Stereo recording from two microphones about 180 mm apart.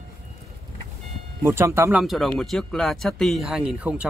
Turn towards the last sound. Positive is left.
turn(degrees=-5)  # may be behind; listen again after turning